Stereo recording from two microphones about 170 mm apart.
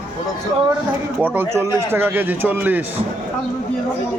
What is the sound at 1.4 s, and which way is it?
A man's voice, 15° right (ahead or behind).